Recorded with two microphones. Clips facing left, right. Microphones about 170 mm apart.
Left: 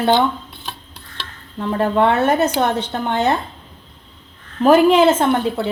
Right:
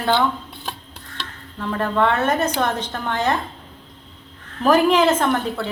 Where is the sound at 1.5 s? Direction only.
30° left (ahead or behind).